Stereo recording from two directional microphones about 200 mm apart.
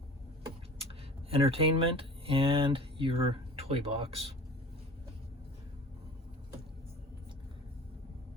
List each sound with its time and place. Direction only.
0.8 s speech: 30° right (ahead or behind)